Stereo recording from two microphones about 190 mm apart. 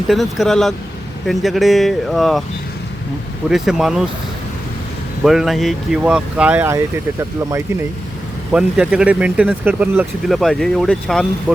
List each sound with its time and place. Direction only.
0.1 s speech: centre (ahead or behind)
3.5 s speech: centre (ahead or behind)
5.2 s speech: centre (ahead or behind)